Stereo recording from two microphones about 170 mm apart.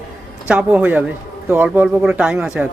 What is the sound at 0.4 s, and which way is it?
A man's voice, 5° right (ahead or behind).